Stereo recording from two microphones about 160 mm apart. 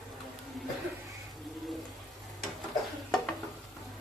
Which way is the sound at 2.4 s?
Centre (ahead or behind).